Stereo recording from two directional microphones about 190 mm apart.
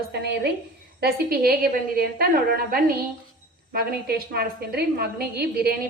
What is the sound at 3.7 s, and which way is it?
A woman's voice, 55° right (ahead or behind).